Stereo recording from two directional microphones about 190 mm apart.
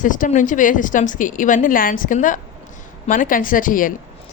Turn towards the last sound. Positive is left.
turn(degrees=45)  # may be behind; listen again after turning